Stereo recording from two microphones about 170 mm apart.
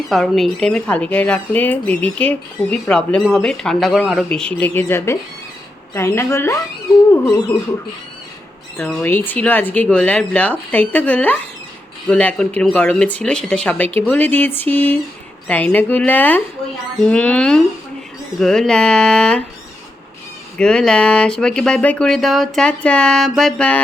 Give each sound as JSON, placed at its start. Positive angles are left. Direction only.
{"t": 0.1, "sound": "speech", "side_deg": 0}
{"t": 8.9, "sound": "speech", "side_deg": 10}
{"t": 20.6, "sound": "speech", "side_deg": 5}